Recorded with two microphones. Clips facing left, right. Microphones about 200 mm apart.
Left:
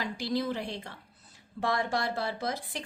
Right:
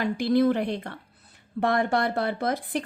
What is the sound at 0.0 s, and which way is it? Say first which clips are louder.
A woman's voice: right 10 dB; 55° right (ahead or behind).